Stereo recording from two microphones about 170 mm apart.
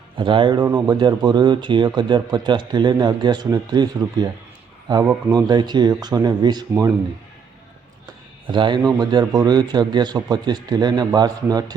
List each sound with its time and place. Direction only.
0.2 s speech: 30° right (ahead or behind)
8.5 s speech: 25° right (ahead or behind)